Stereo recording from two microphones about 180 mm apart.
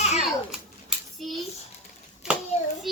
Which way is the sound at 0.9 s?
Centre (ahead or behind).